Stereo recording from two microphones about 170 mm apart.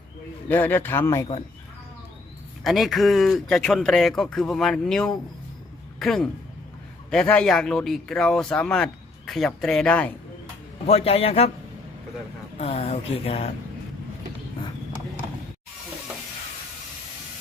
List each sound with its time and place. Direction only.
0.4 s speech: 10° left (ahead or behind)
2.6 s speech: centre (ahead or behind)
10.8 s speech: 35° left (ahead or behind)
12.5 s speech: 40° left (ahead or behind)